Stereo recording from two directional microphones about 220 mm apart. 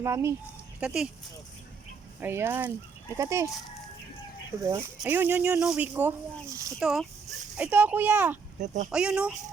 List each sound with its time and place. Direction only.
0.0 s speech: 15° right (ahead or behind)
2.2 s speech: 10° right (ahead or behind)
4.6 s speech: 15° right (ahead or behind)
6.7 s speech: centre (ahead or behind)
8.5 s speech: 35° right (ahead or behind)
8.9 s speech: 5° right (ahead or behind)